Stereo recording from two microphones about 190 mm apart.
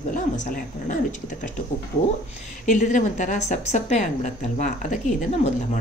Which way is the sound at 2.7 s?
40° left (ahead or behind).